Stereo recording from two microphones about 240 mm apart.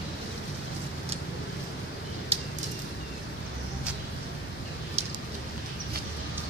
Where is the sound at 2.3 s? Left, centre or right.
Right.